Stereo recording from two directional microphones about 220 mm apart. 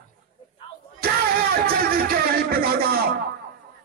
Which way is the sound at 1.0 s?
45° right (ahead or behind).